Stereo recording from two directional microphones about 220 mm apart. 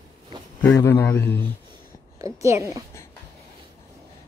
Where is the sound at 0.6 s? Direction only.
10° left (ahead or behind).